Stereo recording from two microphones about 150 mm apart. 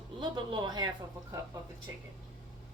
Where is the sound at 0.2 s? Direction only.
30° right (ahead or behind).